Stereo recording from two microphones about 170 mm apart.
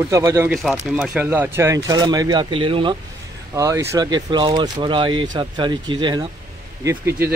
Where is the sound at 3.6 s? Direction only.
20° right (ahead or behind).